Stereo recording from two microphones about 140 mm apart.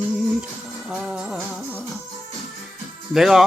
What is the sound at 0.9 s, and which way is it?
Music, 5° right (ahead or behind).